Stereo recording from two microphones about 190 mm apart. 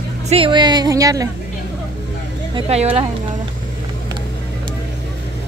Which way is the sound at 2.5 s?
30° right (ahead or behind).